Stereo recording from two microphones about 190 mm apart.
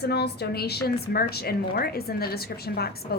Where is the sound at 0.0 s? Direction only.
60° left (ahead or behind).